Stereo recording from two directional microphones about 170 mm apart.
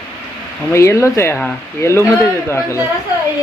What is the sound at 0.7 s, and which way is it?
Speech, 15° left (ahead or behind).